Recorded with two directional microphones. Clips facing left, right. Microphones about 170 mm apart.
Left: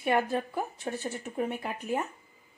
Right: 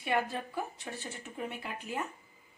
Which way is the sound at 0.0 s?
50° left (ahead or behind).